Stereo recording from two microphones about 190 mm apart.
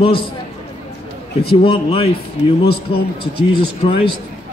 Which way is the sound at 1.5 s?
30° left (ahead or behind).